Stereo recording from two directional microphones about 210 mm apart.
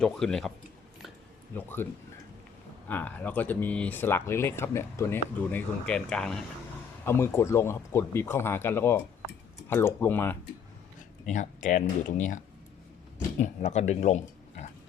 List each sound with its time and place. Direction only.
0.0 s speech: centre (ahead or behind)
1.5 s speech: 10° left (ahead or behind)
2.9 s speech: 10° left (ahead or behind)
11.3 s speech: 35° left (ahead or behind)
13.4 s speech: 35° left (ahead or behind)